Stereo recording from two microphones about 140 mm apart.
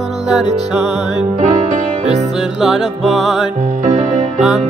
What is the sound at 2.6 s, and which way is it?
Music, 5° right (ahead or behind).